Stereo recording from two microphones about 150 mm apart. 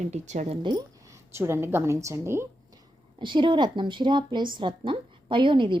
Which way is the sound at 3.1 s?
30° right (ahead or behind).